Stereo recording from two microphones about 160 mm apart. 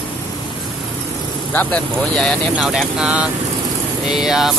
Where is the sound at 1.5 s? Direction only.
10° left (ahead or behind).